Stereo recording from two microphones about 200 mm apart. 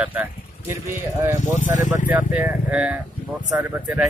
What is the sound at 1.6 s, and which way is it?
Speech, 40° left (ahead or behind).